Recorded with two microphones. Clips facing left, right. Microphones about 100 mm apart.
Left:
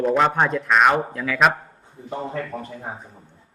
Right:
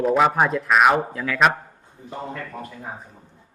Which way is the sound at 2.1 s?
30° left (ahead or behind).